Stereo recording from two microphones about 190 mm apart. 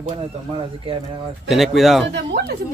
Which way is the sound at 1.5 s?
Centre (ahead or behind).